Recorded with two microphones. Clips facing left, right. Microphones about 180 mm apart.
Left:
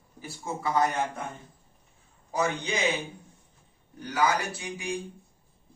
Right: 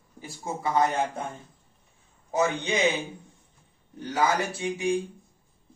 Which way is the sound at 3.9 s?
25° right (ahead or behind).